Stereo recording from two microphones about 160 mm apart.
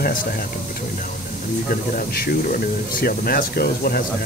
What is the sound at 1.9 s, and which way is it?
Speech, 65° left (ahead or behind).